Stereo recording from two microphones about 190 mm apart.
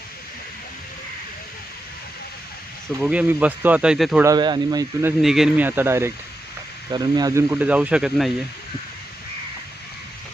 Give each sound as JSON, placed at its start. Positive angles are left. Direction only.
{"t": 3.0, "sound": "speech", "side_deg": -5}
{"t": 4.2, "sound": "speech", "side_deg": -20}
{"t": 5.2, "sound": "speech", "side_deg": 0}
{"t": 7.5, "sound": "speech", "side_deg": -10}